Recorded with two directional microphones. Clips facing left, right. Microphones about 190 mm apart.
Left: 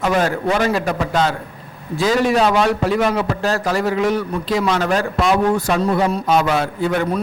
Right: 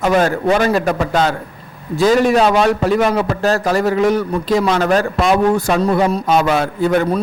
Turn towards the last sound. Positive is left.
turn(degrees=-45)  # may be behind; listen again after turning